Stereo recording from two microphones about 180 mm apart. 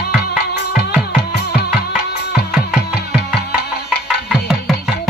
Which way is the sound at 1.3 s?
70° left (ahead or behind).